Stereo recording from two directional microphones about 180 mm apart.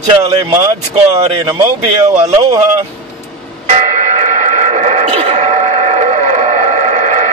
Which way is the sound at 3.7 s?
40° right (ahead or behind).